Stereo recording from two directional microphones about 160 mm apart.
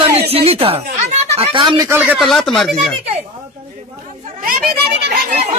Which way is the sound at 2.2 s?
Centre (ahead or behind).